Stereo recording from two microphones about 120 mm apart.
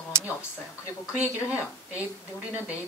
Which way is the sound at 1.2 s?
10° right (ahead or behind).